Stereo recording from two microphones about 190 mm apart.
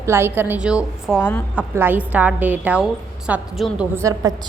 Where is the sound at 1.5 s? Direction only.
10° right (ahead or behind).